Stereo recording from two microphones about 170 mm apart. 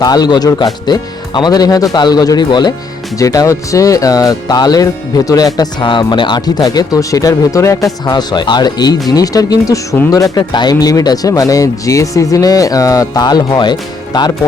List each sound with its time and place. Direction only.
0.0 s speech: 25° left (ahead or behind)